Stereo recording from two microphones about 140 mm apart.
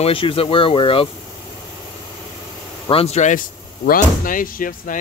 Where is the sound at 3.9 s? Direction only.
85° left.